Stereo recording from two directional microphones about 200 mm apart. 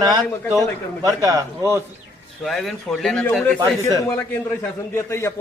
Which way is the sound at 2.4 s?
Centre (ahead or behind).